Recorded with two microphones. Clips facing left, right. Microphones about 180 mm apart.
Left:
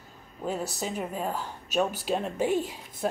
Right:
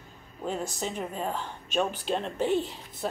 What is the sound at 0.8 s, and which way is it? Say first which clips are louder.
Speech: left 1 dB; 10° left (ahead or behind).